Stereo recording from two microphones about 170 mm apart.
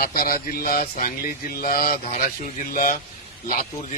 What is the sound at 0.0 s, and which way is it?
Speech, 60° left (ahead or behind).